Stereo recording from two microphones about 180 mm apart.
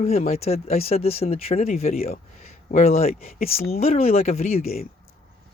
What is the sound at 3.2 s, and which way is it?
Speech, 55° left (ahead or behind).